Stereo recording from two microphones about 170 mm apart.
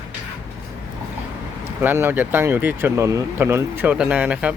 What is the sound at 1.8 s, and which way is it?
Speech, 10° right (ahead or behind).